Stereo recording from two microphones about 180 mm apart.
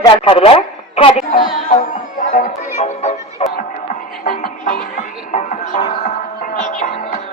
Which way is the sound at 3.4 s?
40° left (ahead or behind).